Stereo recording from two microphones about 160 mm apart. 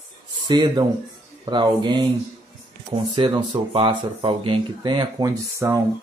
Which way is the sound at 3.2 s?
25° right (ahead or behind).